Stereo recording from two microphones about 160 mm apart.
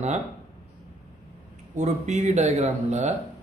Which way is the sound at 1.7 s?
45° right (ahead or behind).